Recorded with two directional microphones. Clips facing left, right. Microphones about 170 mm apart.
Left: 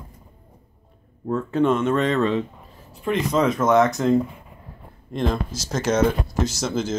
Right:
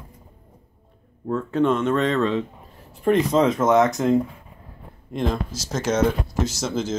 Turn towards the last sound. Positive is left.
turn(degrees=0)  # may be behind; listen again after turning